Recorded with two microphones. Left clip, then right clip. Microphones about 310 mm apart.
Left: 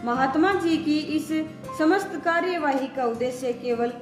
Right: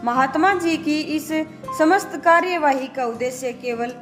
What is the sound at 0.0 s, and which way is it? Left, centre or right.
A woman's voice, right.